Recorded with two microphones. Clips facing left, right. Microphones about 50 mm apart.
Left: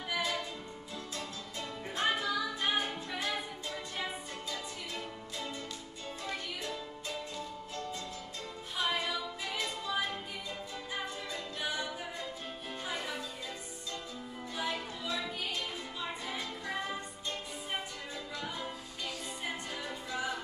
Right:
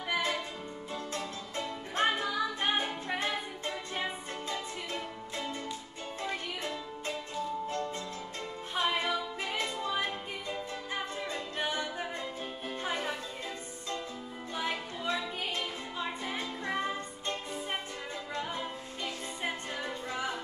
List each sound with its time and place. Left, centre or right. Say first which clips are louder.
0.1 s music: right 3 dB; right
2.0 s music: right 3 dB; right
6.2 s music: right 3 dB; right
8.7 s music: right 3 dB; right
11.5 s a capella: right 3 dB; right
12.8 s music: right 5 dB; right
14.5 s music: right 2 dB; right
18.3 s music: right 4 dB; right